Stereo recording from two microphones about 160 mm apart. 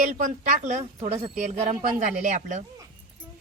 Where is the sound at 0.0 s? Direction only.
50° right (ahead or behind).